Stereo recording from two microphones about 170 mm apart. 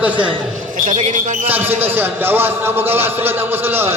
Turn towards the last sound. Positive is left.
turn(degrees=-15)  # may be behind; listen again after turning